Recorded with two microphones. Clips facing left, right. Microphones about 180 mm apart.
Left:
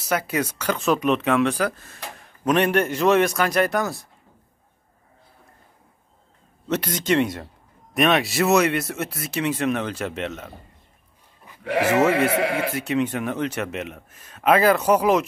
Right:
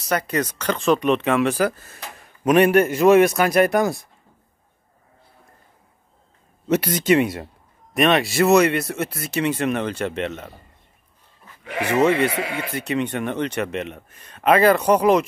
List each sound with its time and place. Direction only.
0.0 s a man's voice: 5° left (ahead or behind); by 4.0 s 15° right (ahead or behind)
6.7 s a man's voice: 10° right (ahead or behind)
11.6 s speech: 70° left (ahead or behind)
12.0 s speech: 5° left (ahead or behind)
12.3 s speech: 65° left (ahead or behind)
12.7 s speech: centre (ahead or behind)